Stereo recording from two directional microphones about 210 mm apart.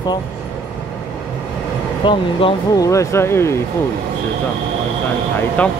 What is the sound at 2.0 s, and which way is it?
Speech, 25° left (ahead or behind).